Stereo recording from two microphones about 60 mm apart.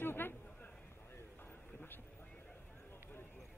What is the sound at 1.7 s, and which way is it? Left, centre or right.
Vehicle, left.